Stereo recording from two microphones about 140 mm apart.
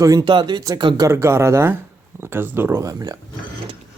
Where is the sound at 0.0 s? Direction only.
25° right (ahead or behind).